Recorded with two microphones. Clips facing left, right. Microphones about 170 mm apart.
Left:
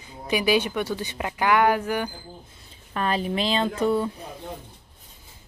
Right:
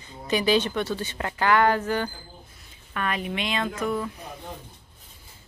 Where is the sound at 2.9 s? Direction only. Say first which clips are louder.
Left 4 dB; 30° left (ahead or behind).